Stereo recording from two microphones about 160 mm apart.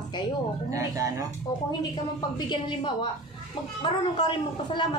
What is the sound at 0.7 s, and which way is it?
Speech, 20° right (ahead or behind).